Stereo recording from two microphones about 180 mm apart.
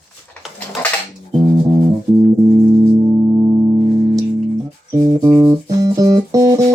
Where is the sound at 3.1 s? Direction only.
20° right (ahead or behind).